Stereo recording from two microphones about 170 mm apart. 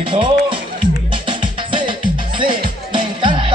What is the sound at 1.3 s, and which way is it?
Music, 30° right (ahead or behind).